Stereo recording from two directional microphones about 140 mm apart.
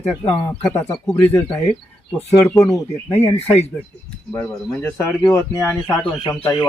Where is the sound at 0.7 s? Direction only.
25° left (ahead or behind).